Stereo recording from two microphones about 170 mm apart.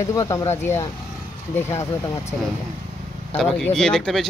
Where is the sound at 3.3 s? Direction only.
5° left (ahead or behind).